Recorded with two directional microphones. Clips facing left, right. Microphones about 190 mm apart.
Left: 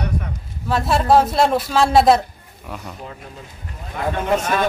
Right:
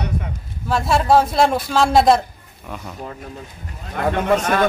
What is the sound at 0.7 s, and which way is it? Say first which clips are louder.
Speech: even; centre (ahead or behind).